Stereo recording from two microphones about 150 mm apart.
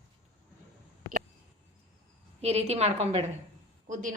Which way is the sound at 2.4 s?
45° right (ahead or behind).